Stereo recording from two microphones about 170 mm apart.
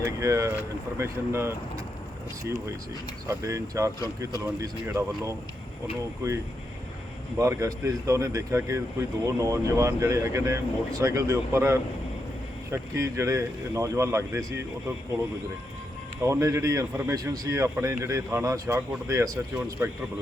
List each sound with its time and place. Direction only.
0.0 s speech: 20° right (ahead or behind)
3.2 s speech: 20° right (ahead or behind)
7.3 s speech: 20° right (ahead or behind)
16.2 s speech: 20° right (ahead or behind)